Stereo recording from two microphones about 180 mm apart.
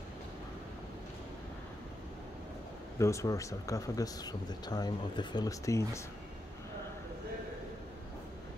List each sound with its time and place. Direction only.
3.0 s speech: 15° left (ahead or behind)